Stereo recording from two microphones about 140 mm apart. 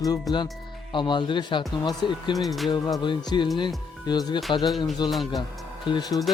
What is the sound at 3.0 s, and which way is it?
Speech, 35° left (ahead or behind).